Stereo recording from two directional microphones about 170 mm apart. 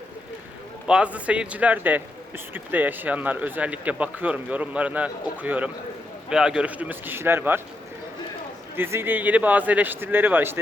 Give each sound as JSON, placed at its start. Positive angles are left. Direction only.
{"t": 0.9, "sound": "speech", "side_deg": -5}
{"t": 8.7, "sound": "speech", "side_deg": -15}